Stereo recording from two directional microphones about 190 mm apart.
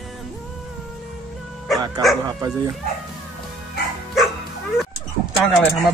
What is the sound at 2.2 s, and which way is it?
Speech, 20° right (ahead or behind).